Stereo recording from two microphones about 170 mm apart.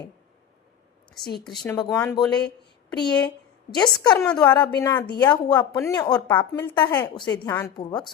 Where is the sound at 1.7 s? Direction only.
20° left (ahead or behind).